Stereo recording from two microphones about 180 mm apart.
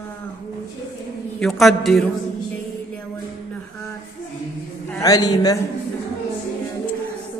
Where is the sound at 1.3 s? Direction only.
Centre (ahead or behind).